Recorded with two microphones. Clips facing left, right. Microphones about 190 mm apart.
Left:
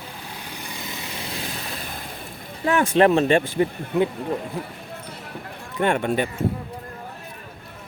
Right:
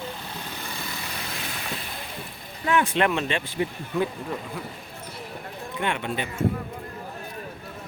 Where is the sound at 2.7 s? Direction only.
40° left (ahead or behind).